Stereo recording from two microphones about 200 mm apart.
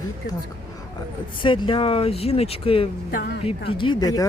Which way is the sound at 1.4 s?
25° left (ahead or behind).